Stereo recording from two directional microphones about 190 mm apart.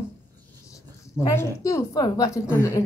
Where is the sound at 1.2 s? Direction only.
15° left (ahead or behind).